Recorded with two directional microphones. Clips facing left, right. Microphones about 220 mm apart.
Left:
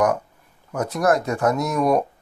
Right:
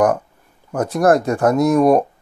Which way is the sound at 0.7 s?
50° right (ahead or behind).